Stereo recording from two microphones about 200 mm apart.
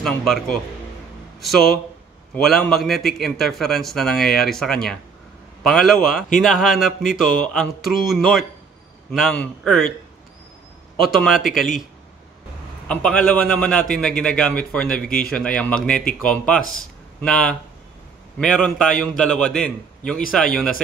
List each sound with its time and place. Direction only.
0.0 s a man's voice: centre (ahead or behind)
11.1 s a man's voice: centre (ahead or behind)
12.8 s a man's voice: 5° left (ahead or behind)